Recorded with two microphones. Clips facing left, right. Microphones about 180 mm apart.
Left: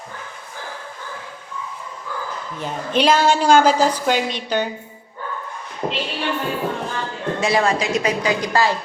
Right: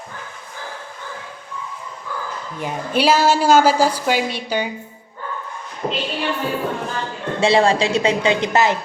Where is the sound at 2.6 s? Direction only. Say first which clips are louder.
Even; 10° right (ahead or behind).